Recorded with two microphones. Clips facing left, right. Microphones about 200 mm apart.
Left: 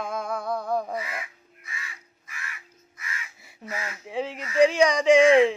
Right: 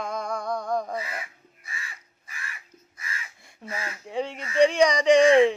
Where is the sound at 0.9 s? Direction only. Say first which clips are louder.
Even; 30° right (ahead or behind).